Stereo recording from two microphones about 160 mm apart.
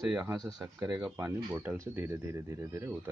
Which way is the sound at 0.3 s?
20° right (ahead or behind).